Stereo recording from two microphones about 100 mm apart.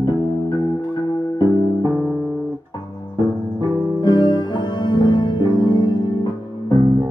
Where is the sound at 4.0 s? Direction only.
50° left (ahead or behind).